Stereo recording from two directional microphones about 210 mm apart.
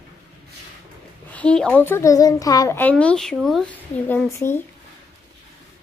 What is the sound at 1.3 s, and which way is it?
Speech, 5° left (ahead or behind).